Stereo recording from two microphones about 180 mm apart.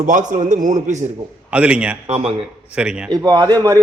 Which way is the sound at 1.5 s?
5° right (ahead or behind).